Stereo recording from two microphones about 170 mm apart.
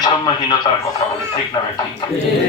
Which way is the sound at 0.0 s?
25° left (ahead or behind).